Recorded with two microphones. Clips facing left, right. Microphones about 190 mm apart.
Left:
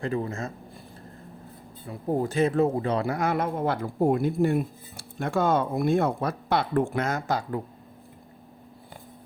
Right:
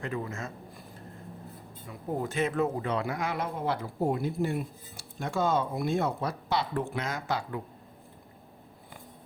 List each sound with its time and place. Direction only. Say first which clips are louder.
0.0 s a man's voice: left 6 dB; 30° left (ahead or behind)
1.9 s speech: left 6 dB; 35° left (ahead or behind)